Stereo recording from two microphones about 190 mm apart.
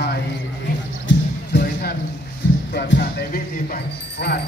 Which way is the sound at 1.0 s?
65° left (ahead or behind).